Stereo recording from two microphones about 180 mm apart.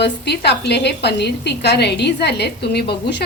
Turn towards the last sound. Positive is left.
turn(degrees=70)  # may be behind; listen again after turning